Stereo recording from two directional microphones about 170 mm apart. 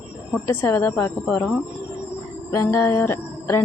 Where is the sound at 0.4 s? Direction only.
15° left (ahead or behind).